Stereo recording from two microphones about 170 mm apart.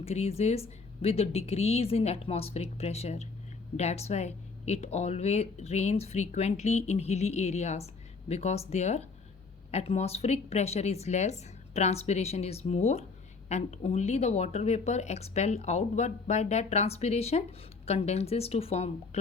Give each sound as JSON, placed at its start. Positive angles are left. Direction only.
{"t": 0.0, "sound": "speech", "side_deg": 35}